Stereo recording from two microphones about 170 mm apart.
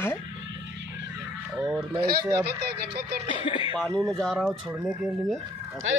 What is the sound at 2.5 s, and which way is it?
Speech, 75° right (ahead or behind).